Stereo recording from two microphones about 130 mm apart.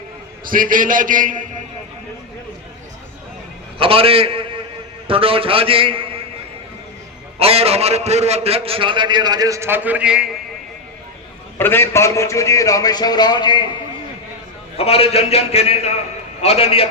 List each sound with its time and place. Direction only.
0.4 s a man's voice: 90° right
3.8 s a man's voice: 45° right (ahead or behind)
7.3 s a man's voice: 50° right (ahead or behind); by 10.2 s 10° right (ahead or behind)
11.5 s a man's voice: 15° left (ahead or behind); by 13.7 s 35° left (ahead or behind)
14.8 s a man's voice: 50° left (ahead or behind)